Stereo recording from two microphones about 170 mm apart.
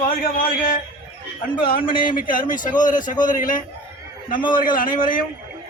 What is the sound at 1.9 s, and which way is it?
Speech, 55° left (ahead or behind).